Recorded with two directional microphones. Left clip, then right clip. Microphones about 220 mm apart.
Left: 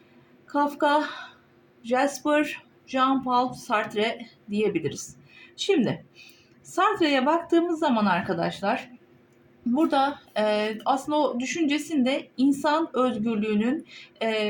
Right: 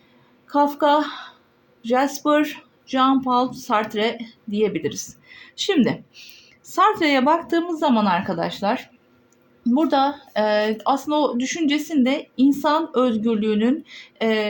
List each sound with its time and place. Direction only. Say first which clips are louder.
0.5 s speech: right 5 dB; 35° right (ahead or behind)